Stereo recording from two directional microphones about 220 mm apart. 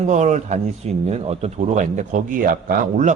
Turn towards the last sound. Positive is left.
turn(degrees=-35)  # may be behind; listen again after turning